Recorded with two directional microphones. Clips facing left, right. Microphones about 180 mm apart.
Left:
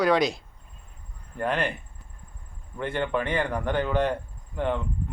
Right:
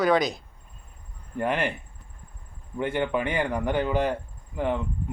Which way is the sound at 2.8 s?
15° right (ahead or behind).